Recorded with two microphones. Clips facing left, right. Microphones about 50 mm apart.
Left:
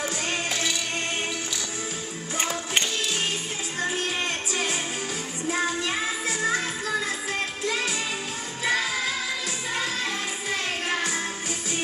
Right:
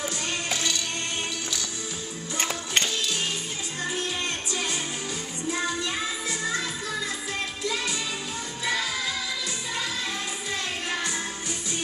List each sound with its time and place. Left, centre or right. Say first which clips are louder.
0.5 s music: left 1 dB; centre
2.3 s music: left 1 dB; centre
5.5 s music: left 2 dB; left